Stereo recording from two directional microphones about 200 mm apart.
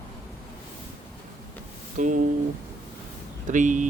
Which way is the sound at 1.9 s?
40° right (ahead or behind).